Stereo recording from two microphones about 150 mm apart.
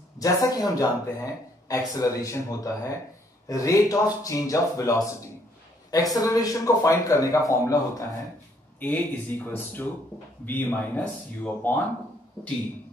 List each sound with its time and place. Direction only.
0.2 s speech: 25° left (ahead or behind)